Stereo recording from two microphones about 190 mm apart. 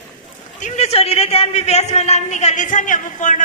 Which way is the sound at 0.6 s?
35° left (ahead or behind).